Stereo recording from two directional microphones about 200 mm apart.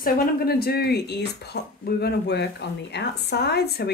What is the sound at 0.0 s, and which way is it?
Speech, 50° left (ahead or behind).